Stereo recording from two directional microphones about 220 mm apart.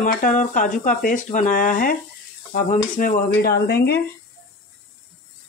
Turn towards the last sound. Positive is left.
turn(degrees=50)  # may be behind; listen again after turning